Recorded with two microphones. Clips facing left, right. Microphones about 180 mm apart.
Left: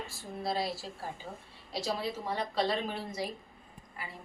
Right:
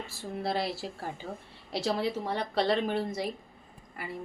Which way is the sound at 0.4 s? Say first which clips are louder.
Right 2 dB; 65° right (ahead or behind).